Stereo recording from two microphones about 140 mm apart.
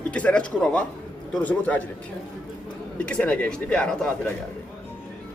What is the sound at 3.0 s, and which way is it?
Speech, 10° left (ahead or behind).